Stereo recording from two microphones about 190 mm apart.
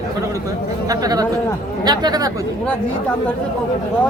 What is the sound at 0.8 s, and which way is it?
Speech, 20° right (ahead or behind).